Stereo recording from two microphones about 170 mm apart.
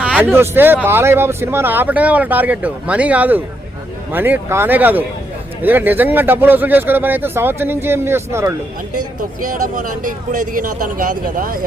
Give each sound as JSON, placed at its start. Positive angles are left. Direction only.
{"t": 0.0, "sound": "a sound", "side_deg": -5}
{"t": 0.3, "sound": "speech", "side_deg": -10}
{"t": 9.4, "sound": "speech", "side_deg": -50}